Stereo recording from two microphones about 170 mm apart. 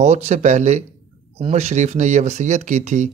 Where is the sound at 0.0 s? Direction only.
40° right (ahead or behind).